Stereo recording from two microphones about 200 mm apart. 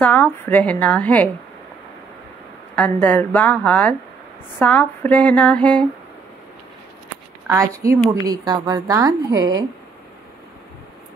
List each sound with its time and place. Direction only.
0.0 s a woman's voice: 10° left (ahead or behind)
2.7 s a woman's voice: 5° left (ahead or behind)
7.4 s a woman's voice: 15° right (ahead or behind)